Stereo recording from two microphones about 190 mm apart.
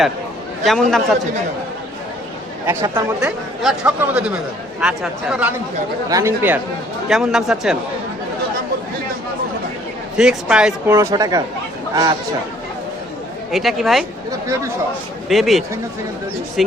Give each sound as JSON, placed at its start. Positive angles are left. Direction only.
{"t": 0.6, "sound": "speech", "side_deg": 0}
{"t": 2.6, "sound": "speech", "side_deg": -15}
{"t": 3.2, "sound": "speech", "side_deg": -5}
{"t": 10.2, "sound": "speech", "side_deg": -5}
{"t": 10.8, "sound": "speech", "side_deg": -15}
{"t": 13.5, "sound": "speech", "side_deg": 0}
{"t": 15.3, "sound": "speech", "side_deg": 0}